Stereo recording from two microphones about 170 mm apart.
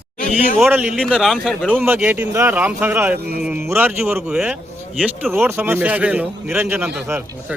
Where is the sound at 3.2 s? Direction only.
70° right (ahead or behind).